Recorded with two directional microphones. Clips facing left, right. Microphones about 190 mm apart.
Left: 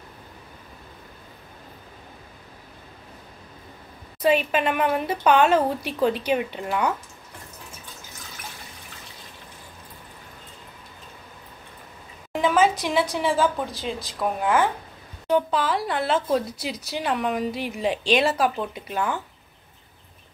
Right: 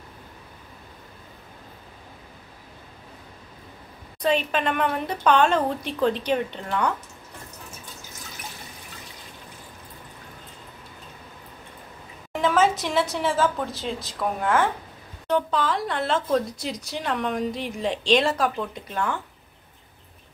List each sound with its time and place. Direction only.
4.2 s speech: 5° left (ahead or behind)
12.3 s a woman's voice: centre (ahead or behind)